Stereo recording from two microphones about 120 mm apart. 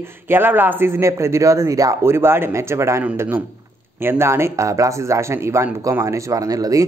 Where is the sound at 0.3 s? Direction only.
15° right (ahead or behind).